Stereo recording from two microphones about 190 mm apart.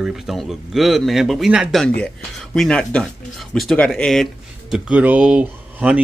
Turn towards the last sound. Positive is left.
turn(degrees=-5)  # may be behind; listen again after turning